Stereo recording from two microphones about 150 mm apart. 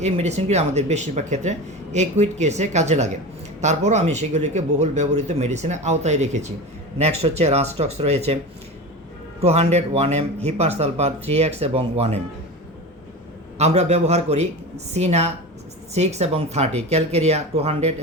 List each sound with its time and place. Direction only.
0.0 s speech: 45° right (ahead or behind)
9.4 s speech: 45° right (ahead or behind)
13.6 s speech: 45° right (ahead or behind)